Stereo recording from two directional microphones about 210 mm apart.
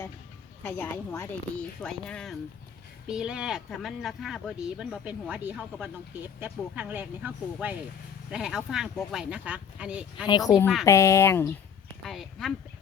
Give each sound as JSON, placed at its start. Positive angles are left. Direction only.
{"t": 0.6, "sound": "speech", "side_deg": 10}
{"t": 10.2, "sound": "speech", "side_deg": 20}
{"t": 12.0, "sound": "speech", "side_deg": 0}